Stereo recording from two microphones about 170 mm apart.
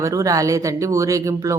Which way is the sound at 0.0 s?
20° right (ahead or behind).